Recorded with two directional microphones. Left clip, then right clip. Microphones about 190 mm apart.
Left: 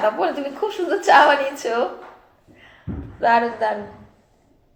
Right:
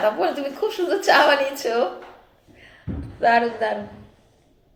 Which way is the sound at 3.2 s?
15° right (ahead or behind).